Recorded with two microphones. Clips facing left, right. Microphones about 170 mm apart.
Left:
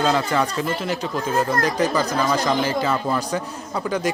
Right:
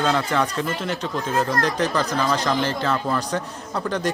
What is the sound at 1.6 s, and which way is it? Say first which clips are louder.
Speech: left 2 dB; 5° left (ahead or behind).